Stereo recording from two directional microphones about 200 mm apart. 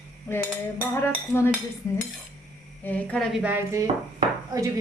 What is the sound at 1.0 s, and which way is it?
Speech, 10° left (ahead or behind).